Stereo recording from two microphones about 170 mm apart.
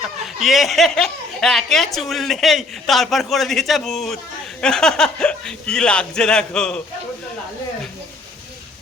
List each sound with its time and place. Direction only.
0.3 s speech: centre (ahead or behind)